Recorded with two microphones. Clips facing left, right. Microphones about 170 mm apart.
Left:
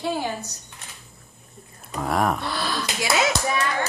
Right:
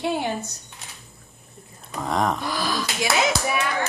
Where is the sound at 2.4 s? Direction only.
15° right (ahead or behind).